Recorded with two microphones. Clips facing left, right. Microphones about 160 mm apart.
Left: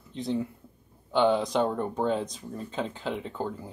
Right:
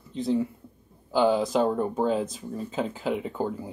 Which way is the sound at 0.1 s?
Centre (ahead or behind).